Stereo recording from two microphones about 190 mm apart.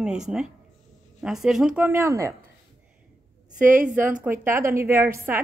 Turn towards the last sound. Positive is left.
turn(degrees=-15)  # may be behind; listen again after turning